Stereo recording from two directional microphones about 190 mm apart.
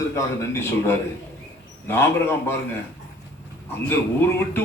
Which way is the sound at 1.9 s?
10° left (ahead or behind).